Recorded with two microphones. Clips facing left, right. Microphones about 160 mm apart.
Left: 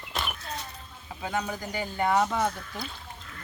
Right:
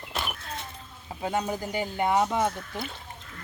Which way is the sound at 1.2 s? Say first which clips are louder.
Right 3 dB; 30° right (ahead or behind).